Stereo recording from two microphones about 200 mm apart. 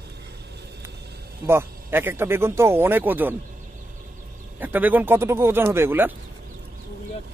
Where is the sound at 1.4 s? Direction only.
10° right (ahead or behind).